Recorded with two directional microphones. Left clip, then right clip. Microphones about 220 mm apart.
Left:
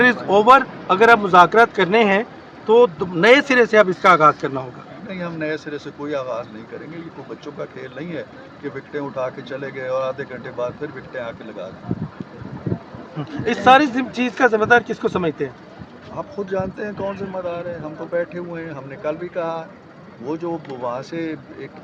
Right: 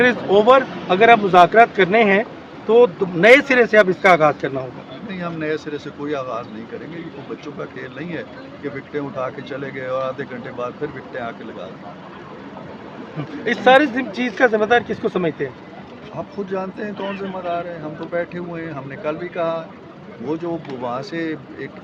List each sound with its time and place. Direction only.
0.0 s speech: 35° left (ahead or behind)
5.0 s speech: 5° right (ahead or behind)
7.4 s speech: centre (ahead or behind)
13.4 s speech: 40° left (ahead or behind)
16.1 s speech: centre (ahead or behind)